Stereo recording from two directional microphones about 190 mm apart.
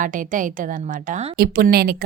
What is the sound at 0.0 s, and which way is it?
Speech, 45° right (ahead or behind).